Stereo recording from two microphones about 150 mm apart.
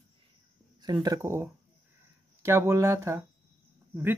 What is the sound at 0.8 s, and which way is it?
Speech, 25° right (ahead or behind).